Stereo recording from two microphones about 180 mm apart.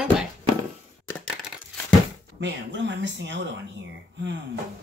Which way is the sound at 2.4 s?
85° right.